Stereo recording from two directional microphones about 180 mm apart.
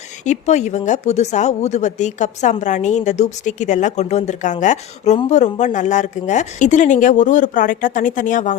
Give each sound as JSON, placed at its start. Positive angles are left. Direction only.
{"t": 0.3, "sound": "speech", "side_deg": 40}